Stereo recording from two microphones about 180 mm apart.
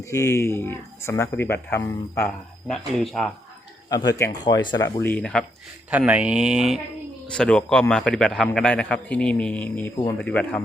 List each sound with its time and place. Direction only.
0.0 s speech: 15° left (ahead or behind)
2.6 s a man's voice: centre (ahead or behind)
3.8 s speech: 20° left (ahead or behind)
5.9 s a man's voice: 5° right (ahead or behind)